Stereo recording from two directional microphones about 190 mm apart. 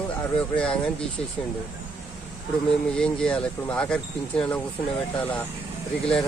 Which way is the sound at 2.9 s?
5° left (ahead or behind).